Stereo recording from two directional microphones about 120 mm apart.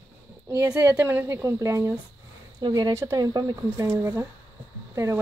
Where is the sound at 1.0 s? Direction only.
15° right (ahead or behind).